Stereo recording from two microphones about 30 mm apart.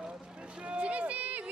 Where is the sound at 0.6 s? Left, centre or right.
Right.